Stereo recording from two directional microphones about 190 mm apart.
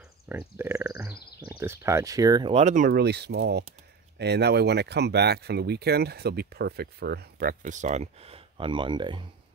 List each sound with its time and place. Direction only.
0.3 s a sound: 10° right (ahead or behind)
1.5 s speech: 15° right (ahead or behind)
2.5 s speech: 40° right (ahead or behind); by 9.2 s 25° right (ahead or behind)